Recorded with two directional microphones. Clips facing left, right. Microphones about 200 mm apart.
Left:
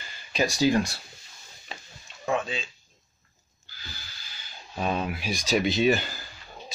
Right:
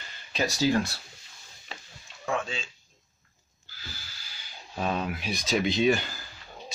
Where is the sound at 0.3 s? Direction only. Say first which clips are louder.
Left 2 dB; 15° left (ahead or behind).